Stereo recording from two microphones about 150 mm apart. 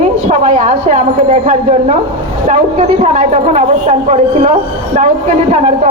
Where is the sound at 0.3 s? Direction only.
50° right (ahead or behind).